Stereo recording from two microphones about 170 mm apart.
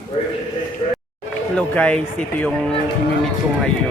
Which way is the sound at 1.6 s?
5° left (ahead or behind).